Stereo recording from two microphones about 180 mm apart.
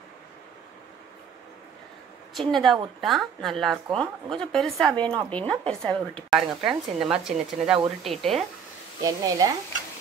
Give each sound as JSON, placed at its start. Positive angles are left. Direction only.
{"t": 2.5, "sound": "a woman's voice", "side_deg": 0}
{"t": 9.0, "sound": "speech", "side_deg": -20}